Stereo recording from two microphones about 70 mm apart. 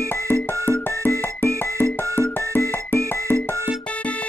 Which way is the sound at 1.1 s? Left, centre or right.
Left.